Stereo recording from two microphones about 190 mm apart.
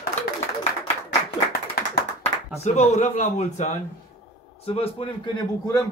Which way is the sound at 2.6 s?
35° left (ahead or behind).